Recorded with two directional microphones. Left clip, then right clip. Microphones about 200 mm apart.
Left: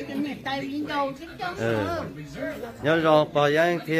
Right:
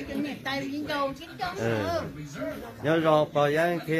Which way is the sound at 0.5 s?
40° right (ahead or behind).